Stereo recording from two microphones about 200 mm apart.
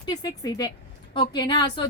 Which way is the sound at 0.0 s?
20° left (ahead or behind).